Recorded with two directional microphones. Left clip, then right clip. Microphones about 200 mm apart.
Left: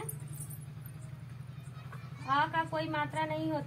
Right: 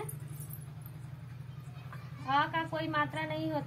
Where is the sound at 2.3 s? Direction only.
10° left (ahead or behind).